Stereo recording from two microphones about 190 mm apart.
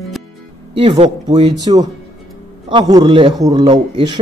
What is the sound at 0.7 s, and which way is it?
A man's voice, 30° right (ahead or behind).